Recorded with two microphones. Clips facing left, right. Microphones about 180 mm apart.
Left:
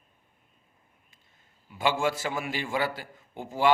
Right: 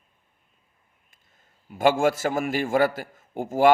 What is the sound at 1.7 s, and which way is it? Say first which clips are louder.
A man's voice: right 6 dB; 50° right (ahead or behind).